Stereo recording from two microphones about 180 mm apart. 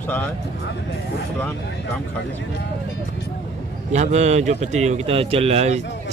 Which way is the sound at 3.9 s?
40° right (ahead or behind).